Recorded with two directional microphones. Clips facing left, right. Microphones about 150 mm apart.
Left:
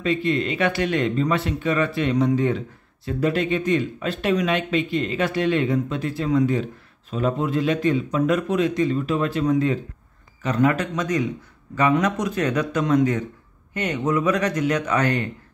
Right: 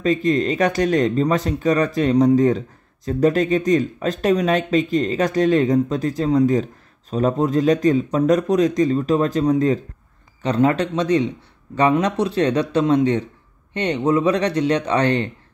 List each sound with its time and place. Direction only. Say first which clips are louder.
0.0 s speech: right 4 dB; 40° right (ahead or behind)